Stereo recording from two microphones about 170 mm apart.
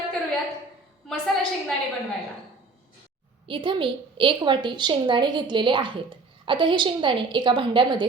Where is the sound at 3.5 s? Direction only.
30° right (ahead or behind).